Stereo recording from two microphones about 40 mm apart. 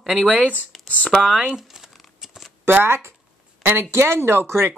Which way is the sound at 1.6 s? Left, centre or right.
Centre.